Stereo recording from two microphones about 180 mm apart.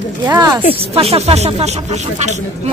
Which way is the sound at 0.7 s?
35° right (ahead or behind).